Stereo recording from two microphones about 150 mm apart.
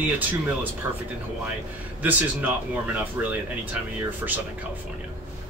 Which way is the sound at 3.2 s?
15° right (ahead or behind).